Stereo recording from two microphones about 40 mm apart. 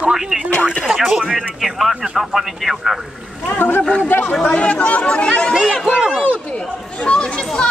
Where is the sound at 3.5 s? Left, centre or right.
Left.